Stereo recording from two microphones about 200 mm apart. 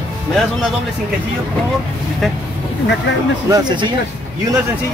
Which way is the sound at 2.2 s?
Centre (ahead or behind).